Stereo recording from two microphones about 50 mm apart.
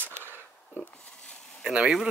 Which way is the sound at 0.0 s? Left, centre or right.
Right.